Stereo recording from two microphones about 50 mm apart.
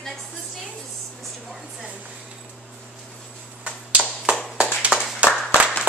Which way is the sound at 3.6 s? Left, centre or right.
Right.